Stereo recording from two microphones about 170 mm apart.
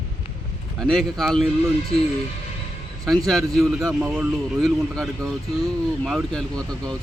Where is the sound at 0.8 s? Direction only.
Centre (ahead or behind).